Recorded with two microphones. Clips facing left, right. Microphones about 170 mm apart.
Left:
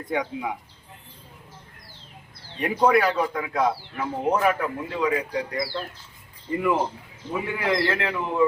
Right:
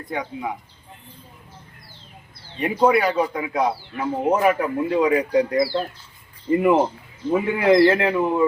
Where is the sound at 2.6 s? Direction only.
5° right (ahead or behind); by 5.8 s 20° right (ahead or behind).